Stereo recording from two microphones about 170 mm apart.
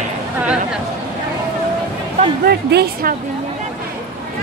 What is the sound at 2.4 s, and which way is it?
Music, 70° right (ahead or behind).